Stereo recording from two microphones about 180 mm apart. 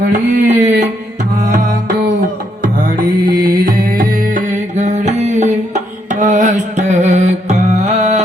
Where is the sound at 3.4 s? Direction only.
55° right (ahead or behind).